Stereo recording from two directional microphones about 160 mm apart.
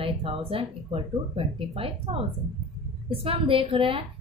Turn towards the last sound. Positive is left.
turn(degrees=-35)  # may be behind; listen again after turning